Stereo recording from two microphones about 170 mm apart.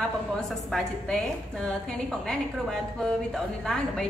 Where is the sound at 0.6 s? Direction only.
5° left (ahead or behind).